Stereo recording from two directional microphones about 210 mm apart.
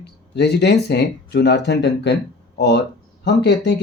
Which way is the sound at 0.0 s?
55° left (ahead or behind).